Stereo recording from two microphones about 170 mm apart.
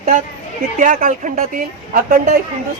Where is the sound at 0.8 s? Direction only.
50° right (ahead or behind).